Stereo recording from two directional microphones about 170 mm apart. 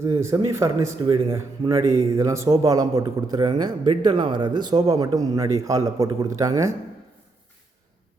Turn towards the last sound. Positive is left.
turn(degrees=-20)  # may be behind; listen again after turning